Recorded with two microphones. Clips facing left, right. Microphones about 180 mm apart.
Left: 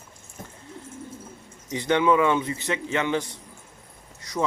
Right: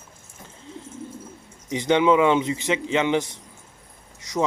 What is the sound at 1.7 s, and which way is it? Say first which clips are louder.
Speech: right 3 dB; 20° right (ahead or behind).